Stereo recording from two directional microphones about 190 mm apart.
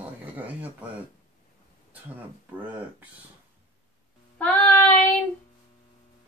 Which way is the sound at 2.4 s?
10° right (ahead or behind).